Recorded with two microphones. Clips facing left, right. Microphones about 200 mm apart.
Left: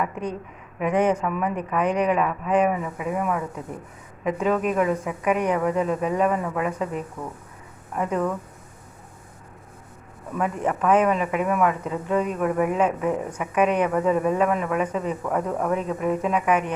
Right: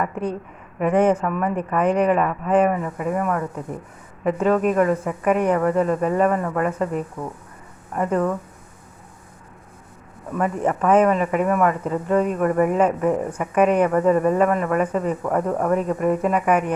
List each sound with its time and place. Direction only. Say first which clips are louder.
0.0 s speech: right 3 dB; 5° right (ahead or behind)
10.3 s speech: right 3 dB; centre (ahead or behind)